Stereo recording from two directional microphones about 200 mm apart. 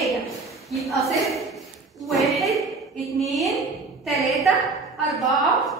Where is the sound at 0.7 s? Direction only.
Centre (ahead or behind).